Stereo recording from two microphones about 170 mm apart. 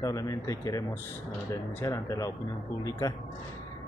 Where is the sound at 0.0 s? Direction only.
20° left (ahead or behind).